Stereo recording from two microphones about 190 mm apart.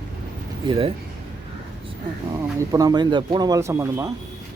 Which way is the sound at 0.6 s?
30° right (ahead or behind).